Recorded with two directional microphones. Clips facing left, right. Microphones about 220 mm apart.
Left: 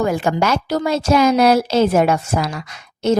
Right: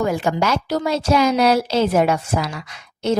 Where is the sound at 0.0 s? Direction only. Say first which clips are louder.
Left 2 dB; 55° left (ahead or behind).